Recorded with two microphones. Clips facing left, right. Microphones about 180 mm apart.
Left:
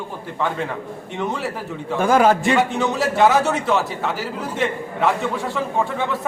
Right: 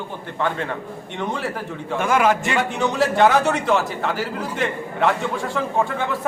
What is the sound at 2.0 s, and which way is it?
Speech, 35° left (ahead or behind).